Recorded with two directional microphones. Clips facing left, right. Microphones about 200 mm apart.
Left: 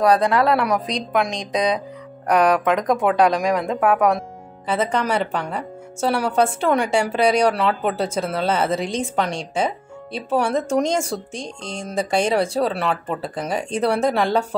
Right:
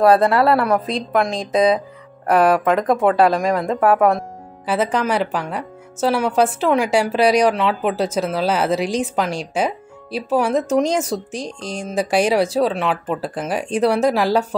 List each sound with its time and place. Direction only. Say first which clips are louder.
0.0 s speech: right 3 dB; 5° right (ahead or behind)
11.3 s speech: right 4 dB; 30° left (ahead or behind)
11.7 s speech: right 2 dB; 5° right (ahead or behind)